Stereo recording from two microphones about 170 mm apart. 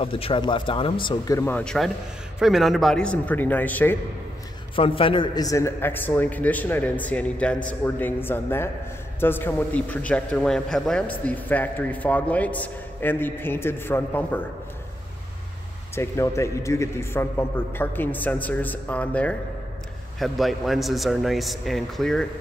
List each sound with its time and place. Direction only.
0.0 s a man's voice: 30° left (ahead or behind); by 4.0 s 10° left (ahead or behind)
4.7 s a man's voice: 30° left (ahead or behind); by 14.4 s 10° left (ahead or behind)
15.9 s a man's voice: 15° left (ahead or behind)